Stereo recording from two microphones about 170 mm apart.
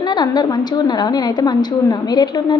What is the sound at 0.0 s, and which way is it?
A woman's voice, 25° left (ahead or behind).